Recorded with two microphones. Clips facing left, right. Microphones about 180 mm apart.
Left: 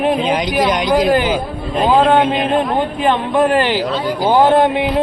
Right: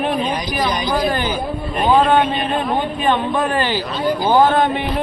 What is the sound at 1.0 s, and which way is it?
Speech, 90° left.